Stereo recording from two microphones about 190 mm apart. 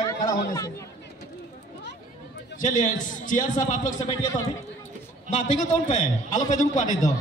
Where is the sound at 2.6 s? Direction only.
40° left (ahead or behind).